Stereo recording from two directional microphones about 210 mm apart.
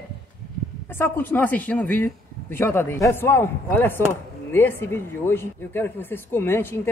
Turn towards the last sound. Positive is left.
turn(degrees=10)  # may be behind; listen again after turning